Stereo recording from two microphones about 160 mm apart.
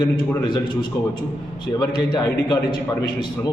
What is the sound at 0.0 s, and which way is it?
A man's voice, 25° left (ahead or behind).